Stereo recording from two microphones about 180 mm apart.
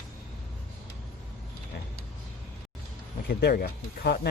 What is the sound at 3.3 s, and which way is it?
Speech, 60° left (ahead or behind).